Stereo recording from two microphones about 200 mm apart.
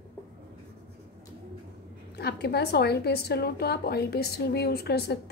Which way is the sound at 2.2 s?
55° left (ahead or behind).